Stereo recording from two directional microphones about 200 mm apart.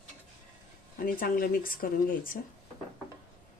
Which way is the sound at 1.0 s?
45° left (ahead or behind).